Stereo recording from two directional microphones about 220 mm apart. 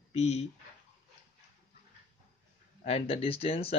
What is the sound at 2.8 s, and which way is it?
Speech, 25° left (ahead or behind).